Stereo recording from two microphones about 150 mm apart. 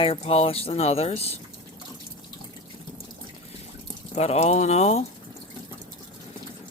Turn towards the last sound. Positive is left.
turn(degrees=45)  # may be behind; listen again after turning